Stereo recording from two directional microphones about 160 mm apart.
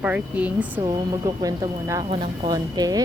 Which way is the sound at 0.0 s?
10° right (ahead or behind).